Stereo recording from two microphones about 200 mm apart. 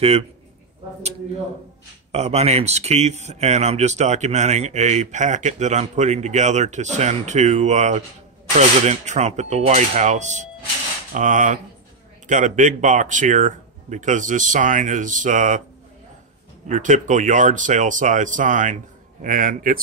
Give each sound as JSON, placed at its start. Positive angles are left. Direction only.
{"t": 2.1, "sound": "speech", "side_deg": -30}
{"t": 16.6, "sound": "speech", "side_deg": -40}